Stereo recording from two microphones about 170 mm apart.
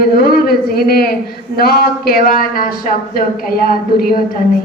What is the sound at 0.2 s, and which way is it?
A man's voice, 60° left (ahead or behind).